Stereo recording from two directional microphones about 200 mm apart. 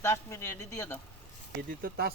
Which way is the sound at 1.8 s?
50° right (ahead or behind).